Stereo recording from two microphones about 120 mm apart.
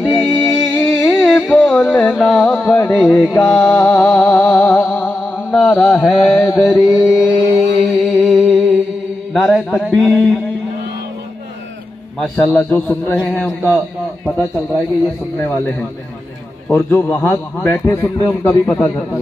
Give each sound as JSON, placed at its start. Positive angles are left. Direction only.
{"t": 0.0, "sound": "music", "side_deg": 15}
{"t": 1.2, "sound": "carnatic music", "side_deg": 5}
{"t": 2.1, "sound": "music", "side_deg": 0}
{"t": 2.9, "sound": "a man's voice", "side_deg": 10}
{"t": 4.3, "sound": "music", "side_deg": 15}
{"t": 5.5, "sound": "mantra", "side_deg": 10}
{"t": 7.8, "sound": "music", "side_deg": 0}
{"t": 9.3, "sound": "mantra", "side_deg": 5}
{"t": 9.9, "sound": "a man's voice", "side_deg": 10}
{"t": 12.2, "sound": "a man's voice", "side_deg": 10}
{"t": 13.2, "sound": "a man's voice", "side_deg": 5}
{"t": 15.3, "sound": "a man's voice", "side_deg": 15}